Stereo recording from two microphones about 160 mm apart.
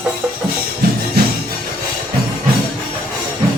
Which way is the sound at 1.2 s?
75° right (ahead or behind).